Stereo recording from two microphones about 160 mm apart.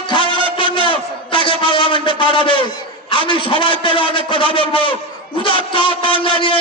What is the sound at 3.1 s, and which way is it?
A man's voice, 30° left (ahead or behind).